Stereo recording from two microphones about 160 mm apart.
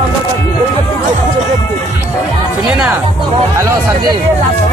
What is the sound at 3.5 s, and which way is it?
Speech, 20° right (ahead or behind).